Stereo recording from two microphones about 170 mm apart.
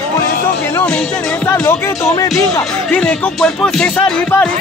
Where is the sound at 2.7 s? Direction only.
5° left (ahead or behind).